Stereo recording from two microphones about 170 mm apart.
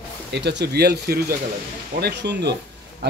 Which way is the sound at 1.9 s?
75° right (ahead or behind).